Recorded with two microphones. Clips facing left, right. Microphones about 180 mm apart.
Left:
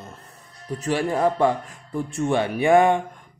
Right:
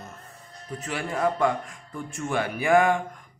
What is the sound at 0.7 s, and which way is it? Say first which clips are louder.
Speech: left 7 dB; 35° left (ahead or behind).